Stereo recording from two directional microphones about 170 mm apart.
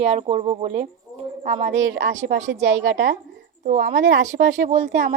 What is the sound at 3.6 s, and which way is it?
Speech, 45° right (ahead or behind).